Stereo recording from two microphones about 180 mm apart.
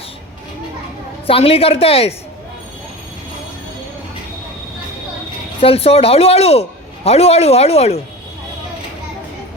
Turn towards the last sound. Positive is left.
turn(degrees=35)  # may be behind; listen again after turning